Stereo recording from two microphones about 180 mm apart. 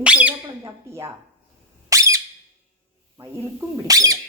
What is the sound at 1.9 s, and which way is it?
Squeak, 15° right (ahead or behind).